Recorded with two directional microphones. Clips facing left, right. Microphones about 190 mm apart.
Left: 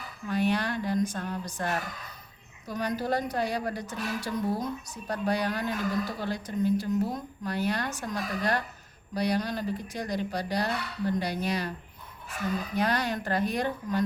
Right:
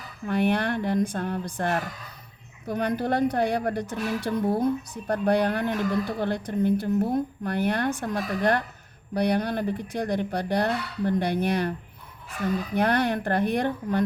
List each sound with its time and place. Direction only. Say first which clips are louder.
0.3 s a woman's voice: right 4 dB; 55° right (ahead or behind)
12.7 s a woman's voice: right 6 dB; 55° right (ahead or behind)